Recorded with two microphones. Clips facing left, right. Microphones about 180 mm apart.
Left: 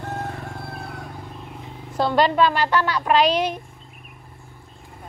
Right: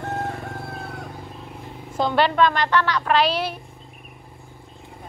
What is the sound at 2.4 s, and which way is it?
Speech, 10° left (ahead or behind).